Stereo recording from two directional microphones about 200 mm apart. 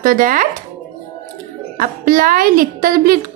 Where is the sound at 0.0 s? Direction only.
45° right (ahead or behind).